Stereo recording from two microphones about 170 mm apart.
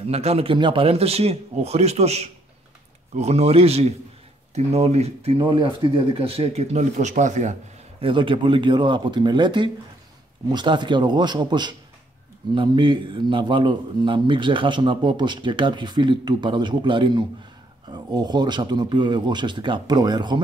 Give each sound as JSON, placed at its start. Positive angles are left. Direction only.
{"t": 0.0, "sound": "speech", "side_deg": -35}
{"t": 8.0, "sound": "a man's voice", "side_deg": -30}